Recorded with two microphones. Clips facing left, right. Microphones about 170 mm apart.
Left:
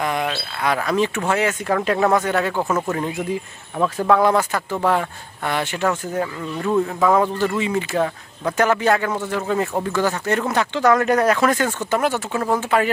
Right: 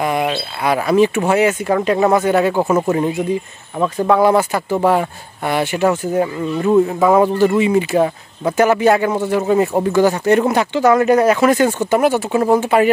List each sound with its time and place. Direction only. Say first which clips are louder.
0.0 s speech: right 5 dB; 15° right (ahead or behind)
3.8 s speech: right 3 dB; 5° right (ahead or behind)